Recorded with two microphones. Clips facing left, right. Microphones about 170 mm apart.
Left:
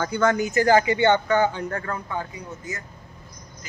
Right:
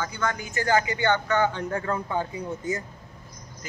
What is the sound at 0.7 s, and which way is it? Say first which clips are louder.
Speech: left 4 dB; 30° left (ahead or behind).